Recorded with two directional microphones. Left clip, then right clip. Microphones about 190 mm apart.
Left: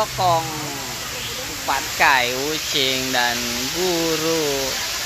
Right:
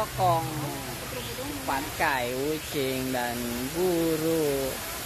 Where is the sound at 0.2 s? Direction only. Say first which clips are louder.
Left 5 dB; 35° left (ahead or behind).